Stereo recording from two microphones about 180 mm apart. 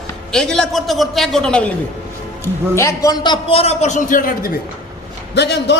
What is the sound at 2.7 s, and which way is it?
A man's voice, 15° left (ahead or behind).